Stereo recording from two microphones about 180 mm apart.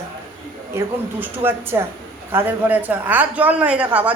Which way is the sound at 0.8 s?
10° right (ahead or behind).